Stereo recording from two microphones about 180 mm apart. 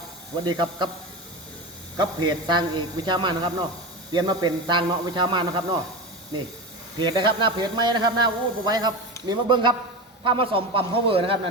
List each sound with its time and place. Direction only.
0.4 s a man's voice: 25° right (ahead or behind)
2.0 s a man's voice: 25° right (ahead or behind)
7.0 s a man's voice: 25° right (ahead or behind)